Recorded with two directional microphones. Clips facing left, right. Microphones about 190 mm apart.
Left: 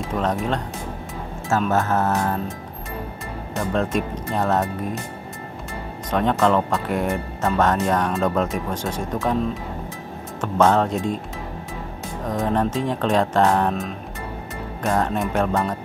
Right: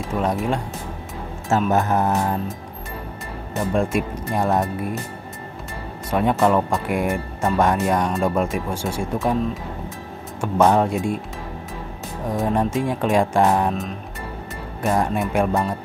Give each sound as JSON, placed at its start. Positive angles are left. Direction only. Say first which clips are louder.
{"t": 0.1, "sound": "speech", "louder": "right 1 dB", "side_deg": -10}
{"t": 1.7, "sound": "speech", "louder": "right 1 dB", "side_deg": -15}
{"t": 3.5, "sound": "speech", "louder": "right 1 dB", "side_deg": -10}
{"t": 6.0, "sound": "speech", "louder": "right 1 dB", "side_deg": -10}
{"t": 12.3, "sound": "speech", "louder": "right 1 dB", "side_deg": -10}
{"t": 14.8, "sound": "speech", "louder": "right 1 dB", "side_deg": -5}